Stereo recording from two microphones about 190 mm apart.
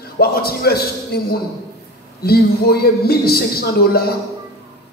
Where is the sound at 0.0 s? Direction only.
55° left (ahead or behind).